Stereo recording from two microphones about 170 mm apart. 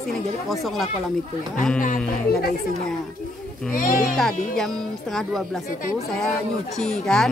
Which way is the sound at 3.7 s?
55° left (ahead or behind).